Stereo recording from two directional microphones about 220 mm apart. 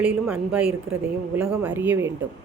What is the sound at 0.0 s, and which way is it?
Speech, 5° right (ahead or behind).